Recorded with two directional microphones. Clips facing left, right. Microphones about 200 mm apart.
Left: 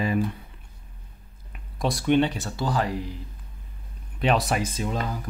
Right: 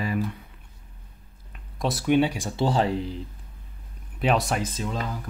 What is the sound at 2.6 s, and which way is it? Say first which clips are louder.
Speech: right 4 dB; 25° right (ahead or behind).